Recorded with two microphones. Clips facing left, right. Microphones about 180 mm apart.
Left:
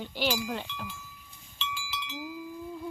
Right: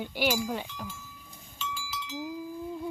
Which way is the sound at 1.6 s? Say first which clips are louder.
Right 1 dB; 40° right (ahead or behind).